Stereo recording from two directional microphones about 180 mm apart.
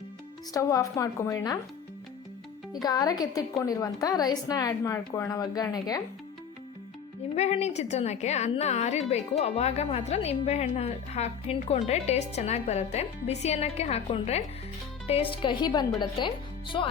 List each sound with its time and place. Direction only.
0.5 s a woman's voice: 20° left (ahead or behind)
2.8 s a woman's voice: 20° left (ahead or behind)
7.3 s a woman's voice: 35° left (ahead or behind)